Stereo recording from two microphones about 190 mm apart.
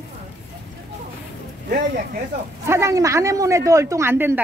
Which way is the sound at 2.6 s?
15° right (ahead or behind).